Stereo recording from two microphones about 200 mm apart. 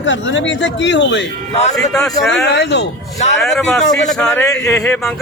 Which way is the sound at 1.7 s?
Centre (ahead or behind).